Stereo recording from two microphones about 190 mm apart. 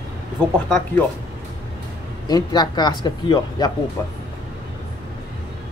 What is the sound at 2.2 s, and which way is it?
Speech, 20° left (ahead or behind).